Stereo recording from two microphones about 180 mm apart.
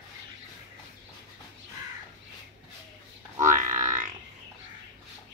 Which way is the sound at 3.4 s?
45° right (ahead or behind).